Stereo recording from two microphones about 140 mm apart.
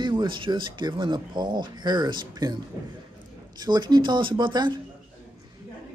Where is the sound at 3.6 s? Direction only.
30° right (ahead or behind).